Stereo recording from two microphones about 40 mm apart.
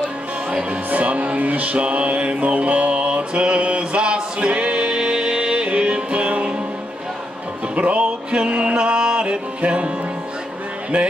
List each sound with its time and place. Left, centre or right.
0.5 s speech: right
0.8 s music: right
7.7 s music: right